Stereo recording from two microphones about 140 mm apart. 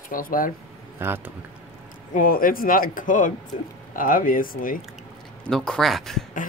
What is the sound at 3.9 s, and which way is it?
Speech, 80° left.